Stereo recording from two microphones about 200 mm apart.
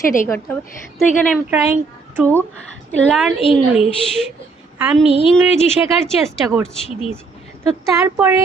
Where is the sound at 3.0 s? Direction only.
Centre (ahead or behind).